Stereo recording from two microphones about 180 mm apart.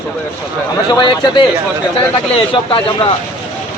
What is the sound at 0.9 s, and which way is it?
A man's voice, 25° left (ahead or behind).